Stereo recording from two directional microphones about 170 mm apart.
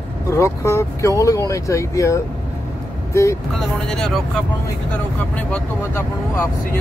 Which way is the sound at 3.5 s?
Centre (ahead or behind).